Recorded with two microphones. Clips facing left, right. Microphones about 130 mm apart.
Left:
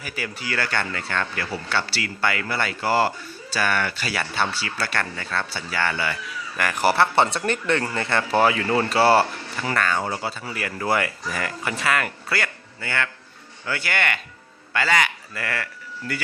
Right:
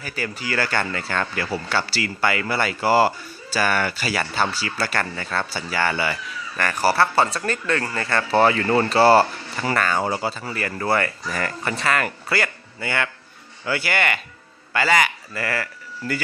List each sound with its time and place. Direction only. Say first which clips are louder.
0.0 s speech: right 2 dB; 5° left (ahead or behind)
6.6 s speech: even; 15° left (ahead or behind)
12.8 s speech: right 2 dB; 15° right (ahead or behind)